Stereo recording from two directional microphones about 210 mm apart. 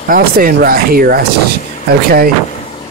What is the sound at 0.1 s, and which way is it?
Speech, 40° right (ahead or behind).